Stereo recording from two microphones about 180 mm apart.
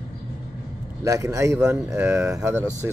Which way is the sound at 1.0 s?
15° right (ahead or behind).